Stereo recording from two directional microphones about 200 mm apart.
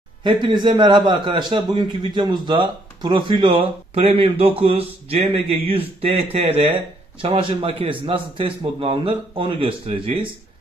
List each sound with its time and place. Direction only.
0.2 s a man's voice: 25° right (ahead or behind)